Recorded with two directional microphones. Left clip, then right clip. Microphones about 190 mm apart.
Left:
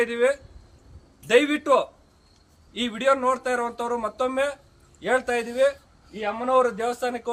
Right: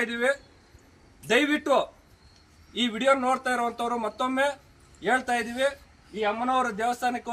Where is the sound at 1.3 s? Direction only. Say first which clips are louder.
Left 4 dB; 20° left (ahead or behind).